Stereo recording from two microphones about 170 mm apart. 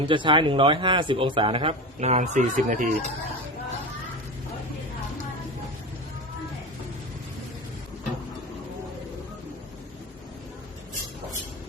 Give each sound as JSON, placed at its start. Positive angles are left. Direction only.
{"t": 0.0, "sound": "speech", "side_deg": -30}